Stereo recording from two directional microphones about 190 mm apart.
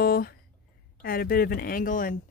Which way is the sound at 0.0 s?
50° left (ahead or behind).